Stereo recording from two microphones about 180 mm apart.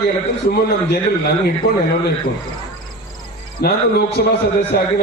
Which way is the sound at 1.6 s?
60° left (ahead or behind).